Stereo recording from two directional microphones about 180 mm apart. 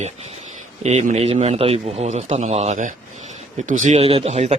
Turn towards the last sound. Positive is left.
turn(degrees=-35)  # may be behind; listen again after turning